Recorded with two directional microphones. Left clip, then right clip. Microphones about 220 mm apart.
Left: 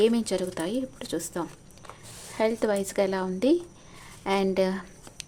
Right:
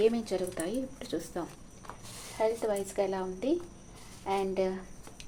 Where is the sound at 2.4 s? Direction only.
50° left (ahead or behind).